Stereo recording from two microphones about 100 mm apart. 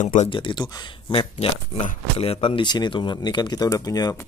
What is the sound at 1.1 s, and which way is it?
Speech, 70° left (ahead or behind).